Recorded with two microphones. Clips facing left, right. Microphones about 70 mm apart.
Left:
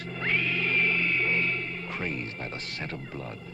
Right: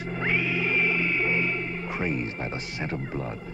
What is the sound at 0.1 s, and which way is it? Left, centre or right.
Music, centre.